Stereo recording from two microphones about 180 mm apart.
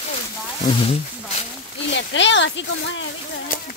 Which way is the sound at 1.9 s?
80° left.